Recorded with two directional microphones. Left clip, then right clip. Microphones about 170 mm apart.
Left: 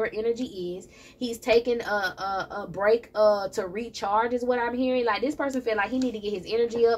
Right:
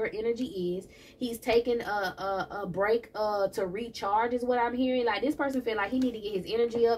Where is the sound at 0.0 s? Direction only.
35° left (ahead or behind).